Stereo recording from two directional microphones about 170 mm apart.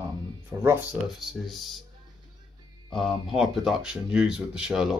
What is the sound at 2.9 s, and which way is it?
Speech, centre (ahead or behind).